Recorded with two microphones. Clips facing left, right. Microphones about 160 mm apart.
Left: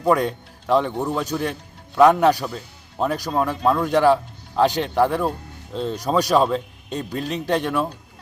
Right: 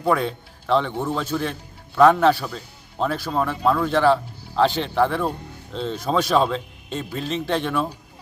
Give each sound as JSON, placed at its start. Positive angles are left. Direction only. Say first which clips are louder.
{"t": 0.0, "sound": "speech", "louder": "left 2 dB", "side_deg": 10}